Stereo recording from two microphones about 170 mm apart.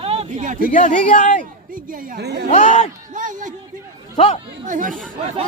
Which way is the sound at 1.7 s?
55° right (ahead or behind).